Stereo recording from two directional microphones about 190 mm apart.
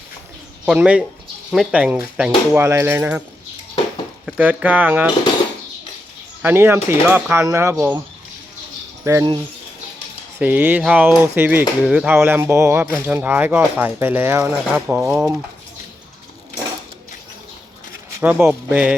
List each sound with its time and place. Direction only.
0.6 s speech: 5° right (ahead or behind)
4.3 s speech: 10° right (ahead or behind)
6.4 s speech: 10° right (ahead or behind)
9.0 s speech: 20° right (ahead or behind)
10.4 s speech: 10° right (ahead or behind)
18.2 s speech: 10° right (ahead or behind)